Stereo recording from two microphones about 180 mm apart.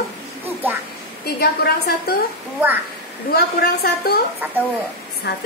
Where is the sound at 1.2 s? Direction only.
60° left (ahead or behind).